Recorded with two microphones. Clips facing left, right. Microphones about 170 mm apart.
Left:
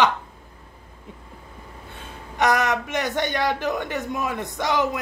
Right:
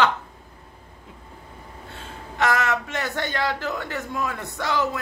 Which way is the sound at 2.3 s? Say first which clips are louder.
Left 2 dB; 15° left (ahead or behind).